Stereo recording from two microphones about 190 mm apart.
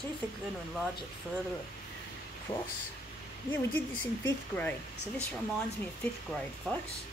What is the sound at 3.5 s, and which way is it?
A woman's voice, 10° left (ahead or behind).